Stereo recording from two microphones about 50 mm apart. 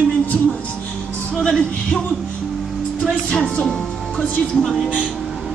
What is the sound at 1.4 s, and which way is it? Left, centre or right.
Music, centre.